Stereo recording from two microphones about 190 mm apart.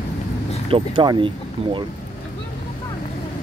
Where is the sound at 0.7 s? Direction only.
25° right (ahead or behind).